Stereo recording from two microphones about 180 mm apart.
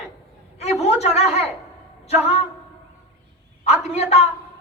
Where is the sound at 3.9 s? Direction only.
35° left (ahead or behind).